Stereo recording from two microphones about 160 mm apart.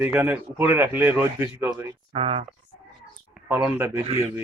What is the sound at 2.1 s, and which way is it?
Speech, 35° right (ahead or behind).